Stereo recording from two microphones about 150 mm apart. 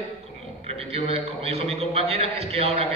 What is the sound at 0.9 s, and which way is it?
A man's voice, 40° right (ahead or behind).